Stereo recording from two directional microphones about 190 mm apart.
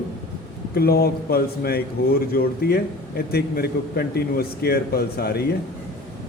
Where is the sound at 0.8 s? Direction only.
55° left (ahead or behind).